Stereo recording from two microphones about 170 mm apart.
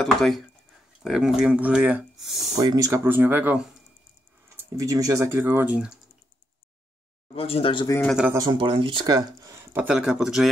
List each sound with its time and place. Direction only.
0.0 s speech: 5° left (ahead or behind)
2.5 s speech: 20° right (ahead or behind)
7.3 s speech: 35° left (ahead or behind)
8.3 s speech: 25° right (ahead or behind); by 10.5 s centre (ahead or behind)